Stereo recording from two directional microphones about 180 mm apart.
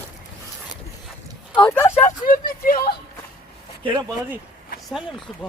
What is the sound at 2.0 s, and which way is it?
Speech, 50° left (ahead or behind).